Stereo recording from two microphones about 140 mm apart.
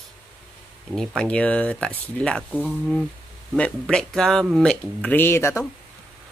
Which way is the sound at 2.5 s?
10° right (ahead or behind).